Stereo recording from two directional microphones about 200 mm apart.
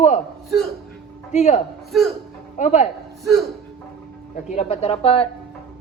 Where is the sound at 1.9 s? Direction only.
Centre (ahead or behind).